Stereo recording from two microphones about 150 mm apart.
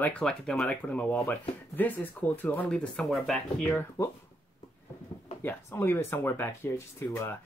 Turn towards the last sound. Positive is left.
turn(degrees=15)  # may be behind; listen again after turning